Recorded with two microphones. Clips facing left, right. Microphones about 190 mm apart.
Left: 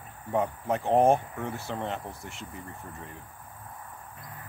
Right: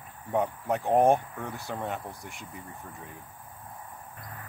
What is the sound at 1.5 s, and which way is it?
Speech, 15° right (ahead or behind).